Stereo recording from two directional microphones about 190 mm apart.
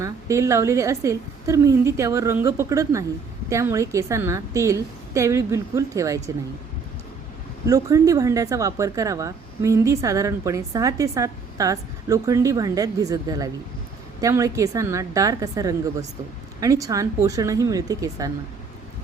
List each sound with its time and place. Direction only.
0.0 s speech: 15° right (ahead or behind)
7.7 s speech: 15° right (ahead or behind)